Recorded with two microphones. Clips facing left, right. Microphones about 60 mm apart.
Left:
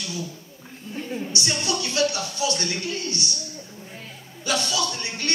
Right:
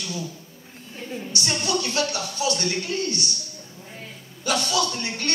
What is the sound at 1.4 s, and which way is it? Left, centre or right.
Speech, right.